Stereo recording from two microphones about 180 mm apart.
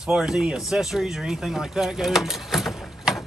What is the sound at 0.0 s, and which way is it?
Speech, 5° right (ahead or behind).